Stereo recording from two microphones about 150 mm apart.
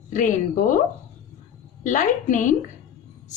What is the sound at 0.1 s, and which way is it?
Speech, 55° left (ahead or behind).